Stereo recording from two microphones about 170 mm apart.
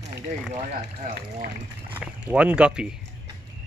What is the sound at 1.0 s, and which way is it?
Speech, 50° right (ahead or behind).